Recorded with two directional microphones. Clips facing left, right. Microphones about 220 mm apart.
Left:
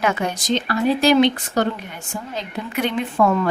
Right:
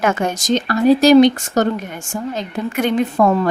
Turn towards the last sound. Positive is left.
turn(degrees=-35)  # may be behind; listen again after turning